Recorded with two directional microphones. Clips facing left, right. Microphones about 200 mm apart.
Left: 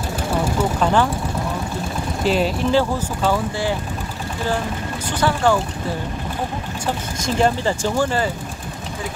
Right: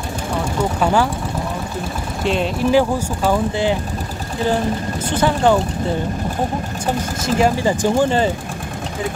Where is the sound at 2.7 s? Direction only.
10° right (ahead or behind).